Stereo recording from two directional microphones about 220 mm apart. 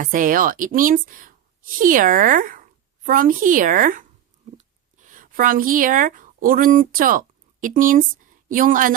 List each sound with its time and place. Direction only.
0.0 s a woman's voice: 40° right (ahead or behind)